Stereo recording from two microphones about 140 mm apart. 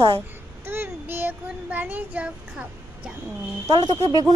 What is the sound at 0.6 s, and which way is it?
Speech, 15° right (ahead or behind).